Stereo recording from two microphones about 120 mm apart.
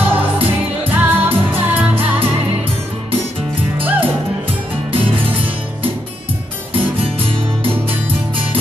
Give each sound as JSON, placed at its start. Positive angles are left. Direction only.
{"t": 0.0, "sound": "music", "side_deg": -15}
{"t": 3.8, "sound": "music", "side_deg": -15}